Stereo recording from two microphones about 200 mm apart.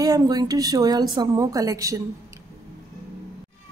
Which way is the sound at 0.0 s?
20° right (ahead or behind).